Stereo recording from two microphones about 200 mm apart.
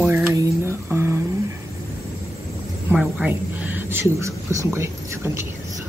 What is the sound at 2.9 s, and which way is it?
Speech, 5° right (ahead or behind).